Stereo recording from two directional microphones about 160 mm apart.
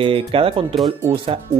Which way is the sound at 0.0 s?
35° right (ahead or behind).